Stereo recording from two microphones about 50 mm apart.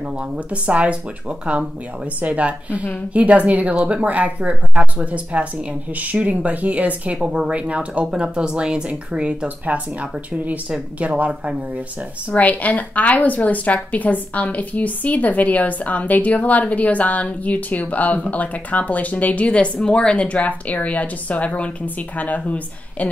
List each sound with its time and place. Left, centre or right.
0.5 s speech: right
7.2 s speech: centre
12.3 s a woman's voice: left